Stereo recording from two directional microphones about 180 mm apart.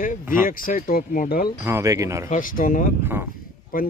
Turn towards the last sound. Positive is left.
turn(degrees=50)  # may be behind; listen again after turning